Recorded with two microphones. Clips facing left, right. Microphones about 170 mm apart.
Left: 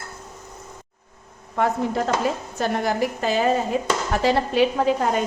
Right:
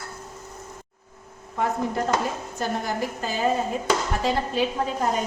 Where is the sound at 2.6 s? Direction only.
75° left (ahead or behind).